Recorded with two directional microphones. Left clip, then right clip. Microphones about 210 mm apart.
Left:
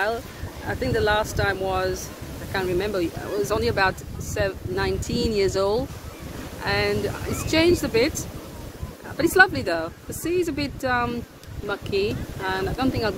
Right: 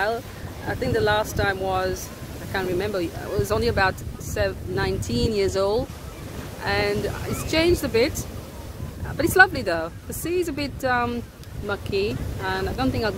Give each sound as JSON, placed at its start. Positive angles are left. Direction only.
{"t": 0.7, "sound": "speech", "side_deg": -5}